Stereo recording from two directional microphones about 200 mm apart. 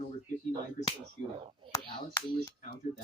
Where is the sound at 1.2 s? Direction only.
25° right (ahead or behind).